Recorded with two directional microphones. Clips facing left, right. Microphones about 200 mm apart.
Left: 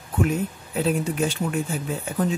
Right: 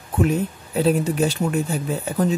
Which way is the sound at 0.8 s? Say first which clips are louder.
Right 4 dB; 35° right (ahead or behind).